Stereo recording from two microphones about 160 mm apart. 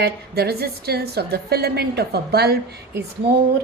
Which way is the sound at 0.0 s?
80° right.